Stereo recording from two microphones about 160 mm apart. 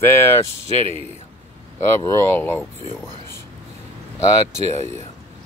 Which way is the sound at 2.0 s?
15° left (ahead or behind).